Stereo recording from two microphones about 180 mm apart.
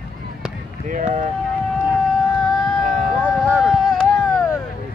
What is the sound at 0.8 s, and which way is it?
Speech, 45° right (ahead or behind).